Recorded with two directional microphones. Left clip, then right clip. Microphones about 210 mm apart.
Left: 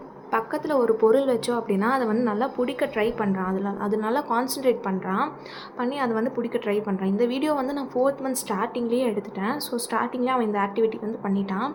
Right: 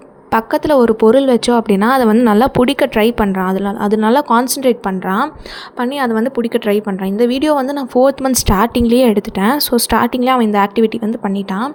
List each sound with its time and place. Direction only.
0.3 s a woman's voice: 45° right (ahead or behind)